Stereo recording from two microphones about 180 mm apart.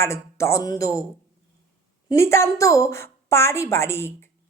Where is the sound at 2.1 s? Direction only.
15° left (ahead or behind).